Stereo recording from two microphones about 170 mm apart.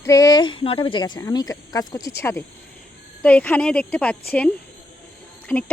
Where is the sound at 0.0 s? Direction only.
20° left (ahead or behind).